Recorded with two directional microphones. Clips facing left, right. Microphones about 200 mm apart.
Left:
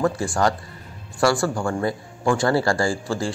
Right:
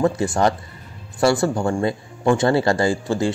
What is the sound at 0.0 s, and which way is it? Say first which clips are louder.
A man's voice: right 3 dB; 20° right (ahead or behind).